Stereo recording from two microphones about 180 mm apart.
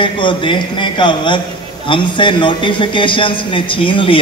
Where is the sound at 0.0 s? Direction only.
25° left (ahead or behind).